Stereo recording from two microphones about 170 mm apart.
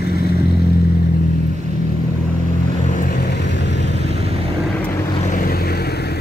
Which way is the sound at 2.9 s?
55° left (ahead or behind).